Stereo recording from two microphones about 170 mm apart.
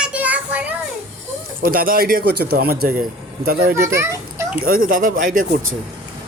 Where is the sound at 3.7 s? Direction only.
15° right (ahead or behind).